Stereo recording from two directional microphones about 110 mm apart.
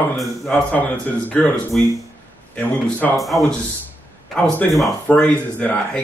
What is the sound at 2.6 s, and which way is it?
Speech, 15° left (ahead or behind).